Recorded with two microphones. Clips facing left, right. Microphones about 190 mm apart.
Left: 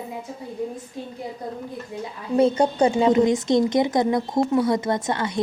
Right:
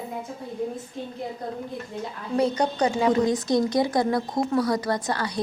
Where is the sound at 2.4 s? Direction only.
25° left (ahead or behind).